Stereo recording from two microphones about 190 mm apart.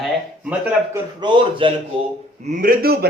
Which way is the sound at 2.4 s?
45° right (ahead or behind).